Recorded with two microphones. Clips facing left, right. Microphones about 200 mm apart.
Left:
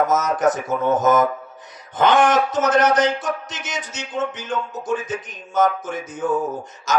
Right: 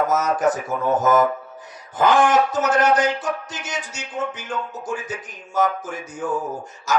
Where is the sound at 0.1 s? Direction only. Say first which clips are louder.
Left 1 dB; 20° left (ahead or behind).